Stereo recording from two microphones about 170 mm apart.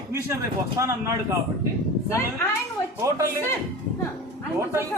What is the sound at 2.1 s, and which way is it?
Speech, 15° left (ahead or behind).